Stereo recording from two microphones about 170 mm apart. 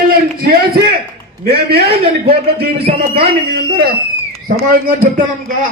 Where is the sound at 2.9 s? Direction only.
45° right (ahead or behind).